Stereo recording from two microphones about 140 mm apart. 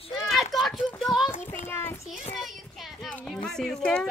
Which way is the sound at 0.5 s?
Centre (ahead or behind).